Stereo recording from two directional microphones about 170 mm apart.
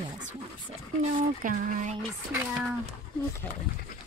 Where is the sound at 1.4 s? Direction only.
50° right (ahead or behind).